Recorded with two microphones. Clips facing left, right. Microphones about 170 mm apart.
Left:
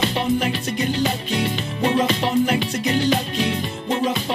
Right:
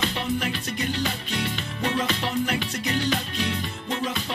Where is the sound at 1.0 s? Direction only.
25° left (ahead or behind).